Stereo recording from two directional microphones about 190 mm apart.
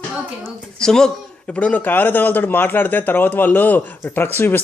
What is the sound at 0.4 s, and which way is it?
Speech, 5° left (ahead or behind).